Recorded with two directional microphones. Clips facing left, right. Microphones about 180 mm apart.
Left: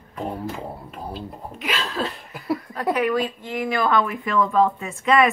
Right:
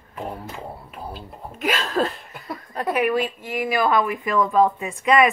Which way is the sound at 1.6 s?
45° right (ahead or behind).